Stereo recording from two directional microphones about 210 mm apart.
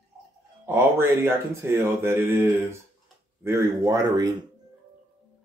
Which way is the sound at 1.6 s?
10° right (ahead or behind).